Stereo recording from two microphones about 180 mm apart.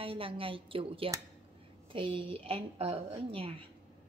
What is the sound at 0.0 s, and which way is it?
A woman's voice, 30° right (ahead or behind).